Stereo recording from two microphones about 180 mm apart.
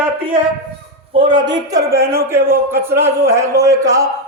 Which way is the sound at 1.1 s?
25° right (ahead or behind).